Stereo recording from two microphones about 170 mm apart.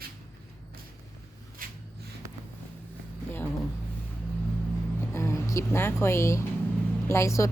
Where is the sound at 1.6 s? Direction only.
55° right (ahead or behind).